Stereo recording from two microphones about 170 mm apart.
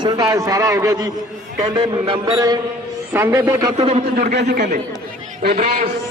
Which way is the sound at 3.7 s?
40° right (ahead or behind).